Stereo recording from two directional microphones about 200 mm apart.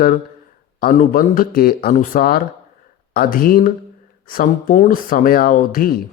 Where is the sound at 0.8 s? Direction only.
45° left (ahead or behind).